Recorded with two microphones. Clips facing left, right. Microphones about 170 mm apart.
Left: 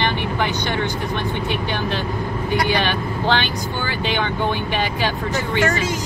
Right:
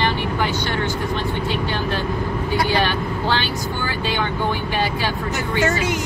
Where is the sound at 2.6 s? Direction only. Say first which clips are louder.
Even; 20° left (ahead or behind).